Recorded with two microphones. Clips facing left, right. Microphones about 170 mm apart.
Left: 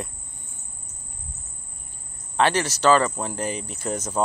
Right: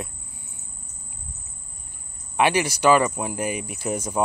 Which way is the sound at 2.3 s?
10° right (ahead or behind).